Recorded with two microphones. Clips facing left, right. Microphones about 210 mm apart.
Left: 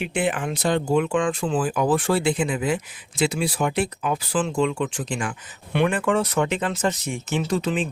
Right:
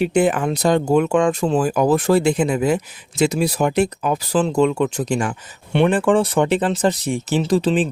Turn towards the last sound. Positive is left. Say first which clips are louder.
# right 6 dB
turn(degrees=-30)  # may be behind; listen again after turning